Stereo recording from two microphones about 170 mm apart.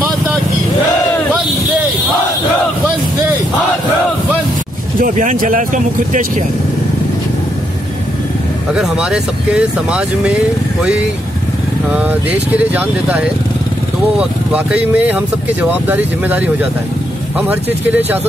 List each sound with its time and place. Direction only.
5.0 s speech: 45° right (ahead or behind)
8.7 s speech: 5° right (ahead or behind)